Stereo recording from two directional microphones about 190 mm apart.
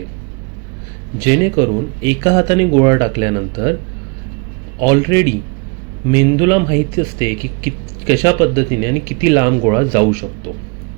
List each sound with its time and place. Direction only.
1.2 s speech: 15° right (ahead or behind)
4.8 s speech: 15° right (ahead or behind)